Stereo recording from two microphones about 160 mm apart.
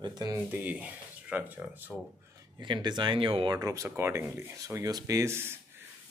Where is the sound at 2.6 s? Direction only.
30° right (ahead or behind).